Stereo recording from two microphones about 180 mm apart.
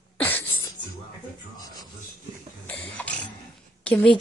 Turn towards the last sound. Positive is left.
turn(degrees=5)  # may be behind; listen again after turning